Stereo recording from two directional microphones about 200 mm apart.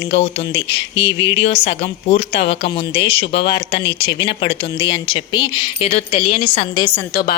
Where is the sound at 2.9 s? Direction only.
30° left (ahead or behind).